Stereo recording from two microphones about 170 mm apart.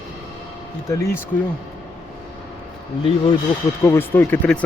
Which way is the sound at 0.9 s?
20° left (ahead or behind).